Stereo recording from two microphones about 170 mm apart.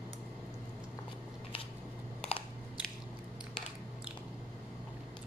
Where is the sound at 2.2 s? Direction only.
35° left (ahead or behind).